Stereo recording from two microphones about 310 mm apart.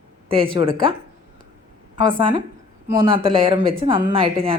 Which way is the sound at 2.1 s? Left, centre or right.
Centre.